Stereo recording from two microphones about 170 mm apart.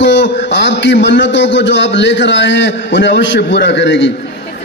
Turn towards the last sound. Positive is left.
turn(degrees=90)